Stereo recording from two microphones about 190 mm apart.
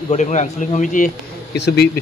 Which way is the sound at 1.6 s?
60° left (ahead or behind).